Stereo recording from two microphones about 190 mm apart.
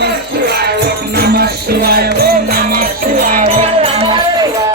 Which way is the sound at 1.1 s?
55° right (ahead or behind).